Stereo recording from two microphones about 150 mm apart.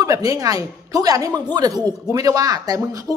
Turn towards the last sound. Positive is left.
turn(degrees=-25)  # may be behind; listen again after turning